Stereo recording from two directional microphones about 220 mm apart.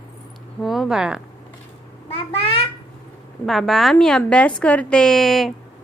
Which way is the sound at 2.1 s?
25° left (ahead or behind).